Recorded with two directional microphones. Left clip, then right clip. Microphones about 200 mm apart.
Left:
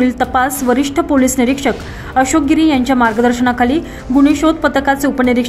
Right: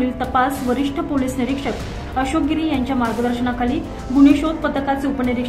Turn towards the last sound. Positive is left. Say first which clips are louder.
# left 7 dB
turn(degrees=45)  # may be behind; listen again after turning